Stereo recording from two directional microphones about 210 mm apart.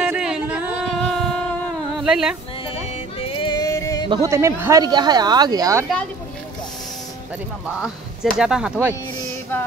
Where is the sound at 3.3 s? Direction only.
20° left (ahead or behind).